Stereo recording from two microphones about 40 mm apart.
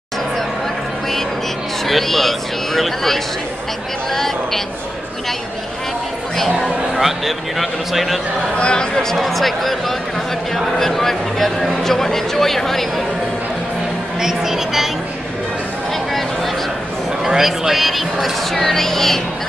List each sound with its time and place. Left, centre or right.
1.9 s speech: centre
6.3 s speech: centre
7.0 s speech: centre
8.5 s speech: left
8.9 s speech: centre
14.2 s speech: centre
17.4 s speech: centre